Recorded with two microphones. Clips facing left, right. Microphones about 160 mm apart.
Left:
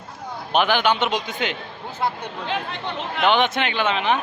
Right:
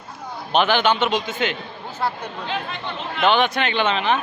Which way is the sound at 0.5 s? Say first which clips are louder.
Right 1 dB; 10° left (ahead or behind).